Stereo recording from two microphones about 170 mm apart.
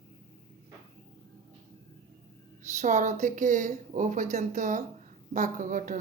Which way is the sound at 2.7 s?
45° right (ahead or behind).